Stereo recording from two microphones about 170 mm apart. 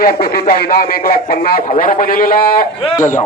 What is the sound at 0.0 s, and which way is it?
Speech, 65° left (ahead or behind).